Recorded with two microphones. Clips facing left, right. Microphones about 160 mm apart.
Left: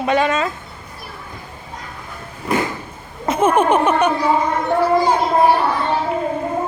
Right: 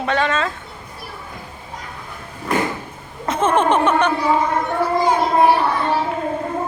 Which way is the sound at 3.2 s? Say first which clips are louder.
Left 2 dB; 10° left (ahead or behind).